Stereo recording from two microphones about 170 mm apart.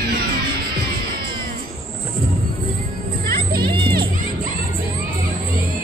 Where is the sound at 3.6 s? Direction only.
30° right (ahead or behind).